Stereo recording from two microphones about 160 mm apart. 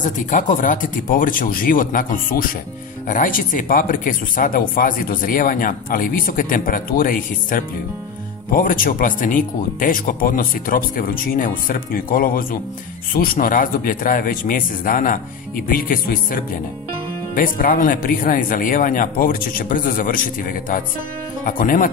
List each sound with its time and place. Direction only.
0.3 s speech: 55° left (ahead or behind)
17.4 s speech: 60° left (ahead or behind)